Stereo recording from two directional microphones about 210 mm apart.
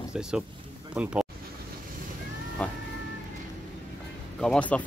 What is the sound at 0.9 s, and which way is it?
Speech, 5° right (ahead or behind).